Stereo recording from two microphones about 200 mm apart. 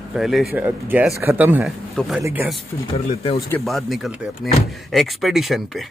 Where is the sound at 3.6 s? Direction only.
Centre (ahead or behind).